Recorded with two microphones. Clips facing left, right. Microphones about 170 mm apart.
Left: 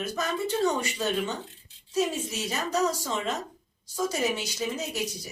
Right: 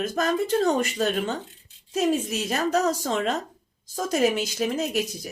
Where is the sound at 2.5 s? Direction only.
55° right (ahead or behind).